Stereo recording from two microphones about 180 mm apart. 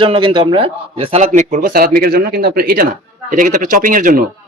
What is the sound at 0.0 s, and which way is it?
A man's voice, 30° right (ahead or behind).